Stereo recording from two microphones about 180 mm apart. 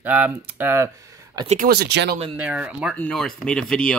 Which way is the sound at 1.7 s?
65° right (ahead or behind).